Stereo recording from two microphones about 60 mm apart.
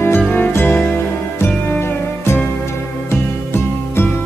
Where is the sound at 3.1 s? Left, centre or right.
Left.